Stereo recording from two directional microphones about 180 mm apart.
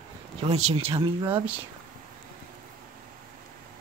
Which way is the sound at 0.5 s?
35° right (ahead or behind).